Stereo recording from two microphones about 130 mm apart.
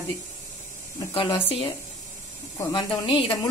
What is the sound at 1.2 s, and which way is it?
Speech, 45° left (ahead or behind).